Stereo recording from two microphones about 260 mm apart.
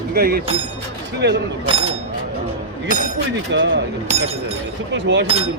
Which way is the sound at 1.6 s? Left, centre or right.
Right.